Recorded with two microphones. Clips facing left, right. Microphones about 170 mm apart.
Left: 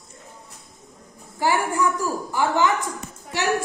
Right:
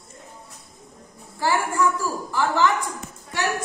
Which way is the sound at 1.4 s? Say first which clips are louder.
Even; 20° left (ahead or behind).